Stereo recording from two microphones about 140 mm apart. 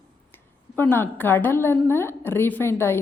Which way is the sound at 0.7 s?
15° left (ahead or behind).